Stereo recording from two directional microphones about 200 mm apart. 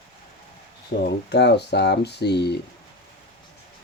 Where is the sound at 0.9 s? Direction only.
55° left (ahead or behind).